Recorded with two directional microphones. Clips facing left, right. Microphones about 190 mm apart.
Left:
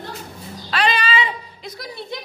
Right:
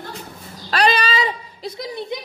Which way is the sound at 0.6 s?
40° right (ahead or behind).